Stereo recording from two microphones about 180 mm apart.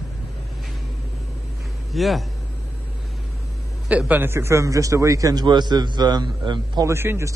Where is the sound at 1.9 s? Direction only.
Centre (ahead or behind).